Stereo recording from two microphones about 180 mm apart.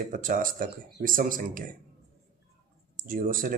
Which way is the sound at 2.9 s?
50° right (ahead or behind).